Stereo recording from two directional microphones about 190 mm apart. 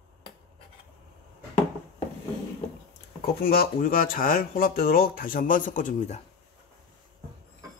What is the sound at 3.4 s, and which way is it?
Speech, 50° left (ahead or behind).